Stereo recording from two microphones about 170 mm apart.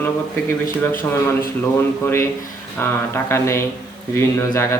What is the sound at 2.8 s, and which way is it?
Speech, 15° left (ahead or behind).